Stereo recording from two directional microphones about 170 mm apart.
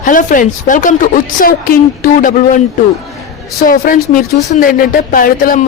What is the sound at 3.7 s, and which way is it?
A woman's voice, 50° left (ahead or behind).